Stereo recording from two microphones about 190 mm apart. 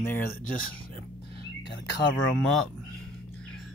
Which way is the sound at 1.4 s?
65° left (ahead or behind).